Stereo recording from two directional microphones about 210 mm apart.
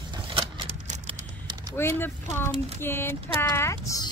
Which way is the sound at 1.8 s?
10° left (ahead or behind).